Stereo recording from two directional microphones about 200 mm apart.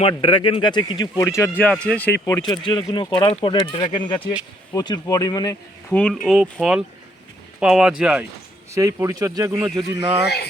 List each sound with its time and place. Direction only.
0.0 s speech: 25° left (ahead or behind); by 2.0 s 5° left (ahead or behind)
2.2 s speech: 20° left (ahead or behind)
5.9 s speech: 5° left (ahead or behind)
8.7 s speech: 15° right (ahead or behind)